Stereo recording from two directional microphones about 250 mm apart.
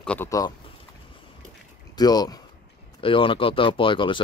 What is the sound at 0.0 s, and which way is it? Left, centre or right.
Speech, centre.